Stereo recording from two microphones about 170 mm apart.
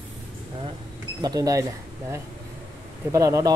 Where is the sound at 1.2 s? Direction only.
20° right (ahead or behind).